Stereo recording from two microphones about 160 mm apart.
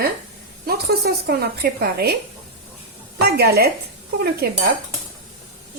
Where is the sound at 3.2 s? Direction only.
80° right.